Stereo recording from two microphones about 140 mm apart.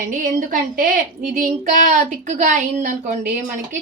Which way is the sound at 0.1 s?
70° right (ahead or behind).